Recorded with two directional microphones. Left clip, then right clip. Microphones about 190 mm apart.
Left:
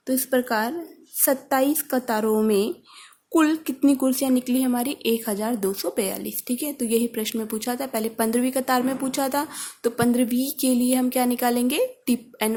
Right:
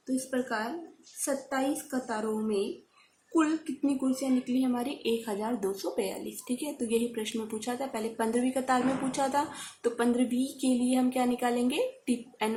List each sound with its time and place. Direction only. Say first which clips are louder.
0.0 s a woman's voice: left 9 dB; 55° left (ahead or behind)